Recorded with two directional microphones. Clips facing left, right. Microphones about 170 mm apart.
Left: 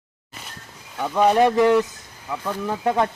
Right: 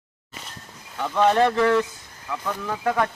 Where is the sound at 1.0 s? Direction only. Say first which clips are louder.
Left 2 dB; 10° left (ahead or behind).